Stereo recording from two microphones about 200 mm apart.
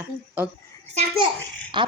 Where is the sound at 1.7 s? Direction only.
25° right (ahead or behind).